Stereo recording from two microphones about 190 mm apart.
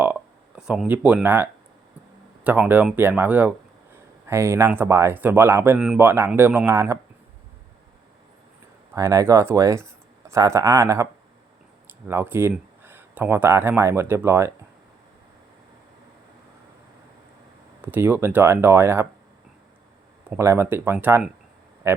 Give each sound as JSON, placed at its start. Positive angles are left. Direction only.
{"t": 0.0, "sound": "a sound", "side_deg": -5}
{"t": 2.4, "sound": "speech", "side_deg": -10}
{"t": 9.0, "sound": "speech", "side_deg": -15}
{"t": 17.8, "sound": "speech", "side_deg": -10}
{"t": 20.3, "sound": "speech", "side_deg": -15}